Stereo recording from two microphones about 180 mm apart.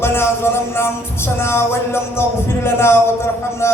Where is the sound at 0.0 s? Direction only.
15° left (ahead or behind).